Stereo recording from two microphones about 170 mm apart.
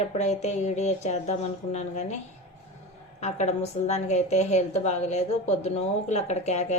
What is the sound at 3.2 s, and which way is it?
A woman's voice, 40° left (ahead or behind).